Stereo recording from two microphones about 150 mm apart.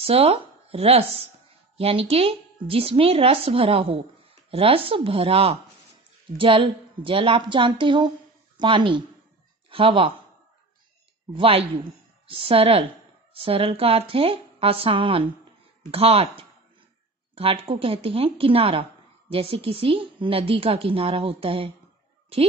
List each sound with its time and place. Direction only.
0.0 s speech: 40° right (ahead or behind)
11.3 s speech: 35° right (ahead or behind)